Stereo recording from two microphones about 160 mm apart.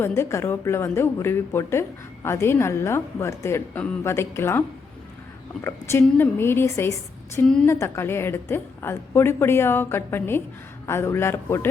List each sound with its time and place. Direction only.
0.0 s a woman's voice: 15° left (ahead or behind)
5.6 s a woman's voice: 15° left (ahead or behind)
7.4 s a woman's voice: 5° left (ahead or behind)
7.7 s a woman's voice: 15° left (ahead or behind)